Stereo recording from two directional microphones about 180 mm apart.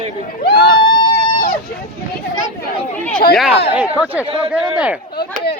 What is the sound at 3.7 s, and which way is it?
Speech, 10° right (ahead or behind).